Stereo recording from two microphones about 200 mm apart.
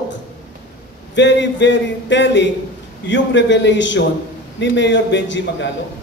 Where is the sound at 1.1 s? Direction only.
60° left (ahead or behind).